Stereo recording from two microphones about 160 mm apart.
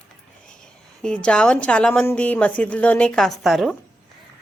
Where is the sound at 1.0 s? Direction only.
5° left (ahead or behind).